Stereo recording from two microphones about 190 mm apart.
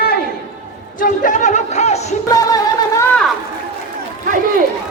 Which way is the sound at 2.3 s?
15° left (ahead or behind).